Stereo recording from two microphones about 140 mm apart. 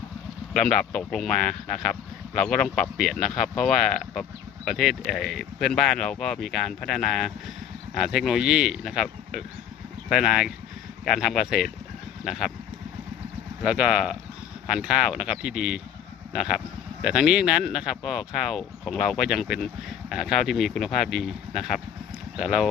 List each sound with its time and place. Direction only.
0.5 s speech: 5° left (ahead or behind)
13.6 s speech: 5° right (ahead or behind)